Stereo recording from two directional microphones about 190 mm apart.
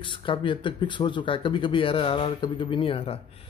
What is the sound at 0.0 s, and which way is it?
A man's voice, 25° left (ahead or behind).